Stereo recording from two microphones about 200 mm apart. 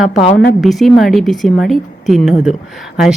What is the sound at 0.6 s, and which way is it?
Speech, centre (ahead or behind).